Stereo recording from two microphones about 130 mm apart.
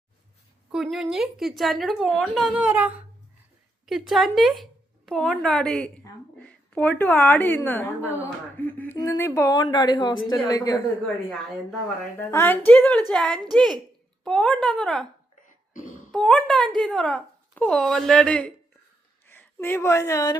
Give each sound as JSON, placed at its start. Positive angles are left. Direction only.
{"t": 0.7, "sound": "speech", "side_deg": -5}
{"t": 2.6, "sound": "a woman's voice", "side_deg": -10}
{"t": 6.3, "sound": "a sound", "side_deg": 10}
{"t": 7.3, "sound": "a woman's voice", "side_deg": 15}
{"t": 9.6, "sound": "speech", "side_deg": 35}
{"t": 12.3, "sound": "a woman's voice", "side_deg": 15}
{"t": 16.1, "sound": "speech", "side_deg": 10}